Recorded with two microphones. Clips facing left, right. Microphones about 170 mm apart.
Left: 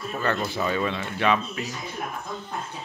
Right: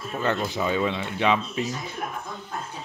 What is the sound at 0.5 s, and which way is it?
Speech, 15° right (ahead or behind).